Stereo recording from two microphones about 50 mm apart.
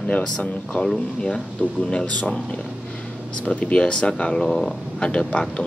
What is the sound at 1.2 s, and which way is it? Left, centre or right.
Speech, centre.